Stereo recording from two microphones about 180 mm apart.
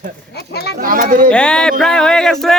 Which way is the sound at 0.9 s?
50° right (ahead or behind).